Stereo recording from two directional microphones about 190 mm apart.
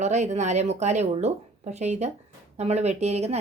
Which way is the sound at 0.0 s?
35° right (ahead or behind).